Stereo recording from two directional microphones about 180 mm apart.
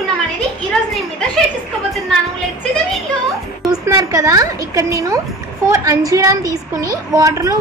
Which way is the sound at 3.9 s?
20° right (ahead or behind).